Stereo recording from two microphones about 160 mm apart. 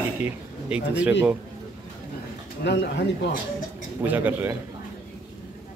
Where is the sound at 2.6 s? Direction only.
90° left.